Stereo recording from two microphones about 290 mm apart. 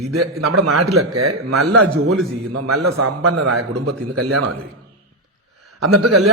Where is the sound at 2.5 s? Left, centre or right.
Right.